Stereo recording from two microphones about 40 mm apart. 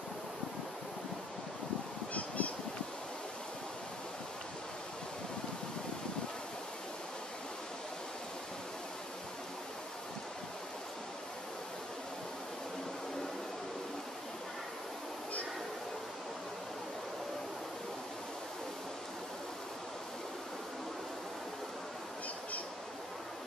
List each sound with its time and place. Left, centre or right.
2.1 s goose: left